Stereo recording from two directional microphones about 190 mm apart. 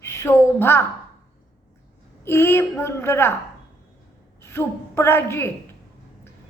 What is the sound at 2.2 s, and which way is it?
A woman's voice, 10° left (ahead or behind).